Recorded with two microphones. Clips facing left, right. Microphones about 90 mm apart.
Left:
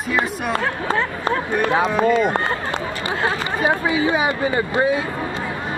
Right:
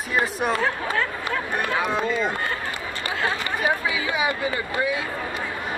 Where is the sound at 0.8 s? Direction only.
25° left (ahead or behind).